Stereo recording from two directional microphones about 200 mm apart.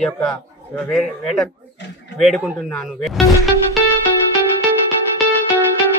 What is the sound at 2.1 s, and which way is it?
Speech, centre (ahead or behind).